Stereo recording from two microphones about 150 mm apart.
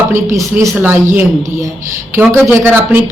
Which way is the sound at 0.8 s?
15° right (ahead or behind).